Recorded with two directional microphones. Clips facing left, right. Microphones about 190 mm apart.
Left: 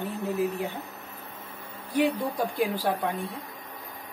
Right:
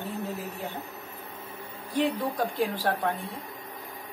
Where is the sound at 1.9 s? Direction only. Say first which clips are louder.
Left 2 dB; 10° left (ahead or behind).